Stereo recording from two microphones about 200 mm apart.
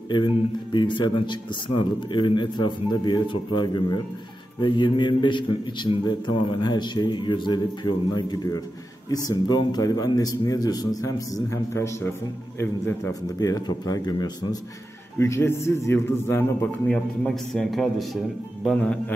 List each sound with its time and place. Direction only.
0.7 s a man's voice: 25° left (ahead or behind); by 19.1 s 5° left (ahead or behind)